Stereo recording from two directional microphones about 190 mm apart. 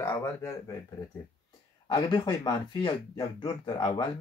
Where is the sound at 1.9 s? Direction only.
20° left (ahead or behind).